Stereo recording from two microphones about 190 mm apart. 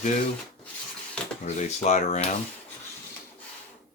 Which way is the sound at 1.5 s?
35° left (ahead or behind).